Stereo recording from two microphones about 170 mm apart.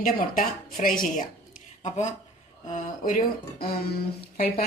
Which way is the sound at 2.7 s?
55° left (ahead or behind).